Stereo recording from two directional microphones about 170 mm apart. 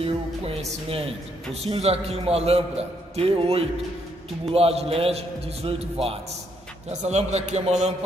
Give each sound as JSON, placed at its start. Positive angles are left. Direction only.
{"t": 0.0, "sound": "speech", "side_deg": -35}